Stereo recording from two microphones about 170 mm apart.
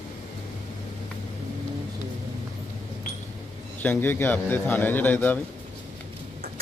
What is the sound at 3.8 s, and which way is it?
A man's voice, 10° left (ahead or behind).